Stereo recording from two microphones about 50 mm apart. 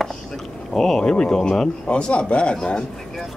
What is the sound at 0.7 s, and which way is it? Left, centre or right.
Speech, centre.